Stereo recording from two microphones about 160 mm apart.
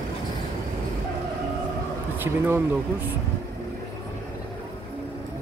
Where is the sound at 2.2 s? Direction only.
15° right (ahead or behind).